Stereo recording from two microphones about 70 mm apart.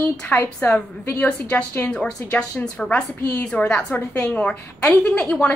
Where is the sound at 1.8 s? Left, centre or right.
Centre.